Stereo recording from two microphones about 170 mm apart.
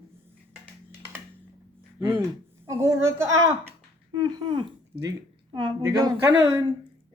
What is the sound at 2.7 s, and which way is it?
A child's voice, 20° right (ahead or behind).